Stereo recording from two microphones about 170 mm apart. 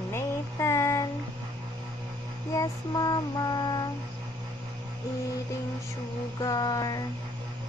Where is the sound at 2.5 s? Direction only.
20° left (ahead or behind).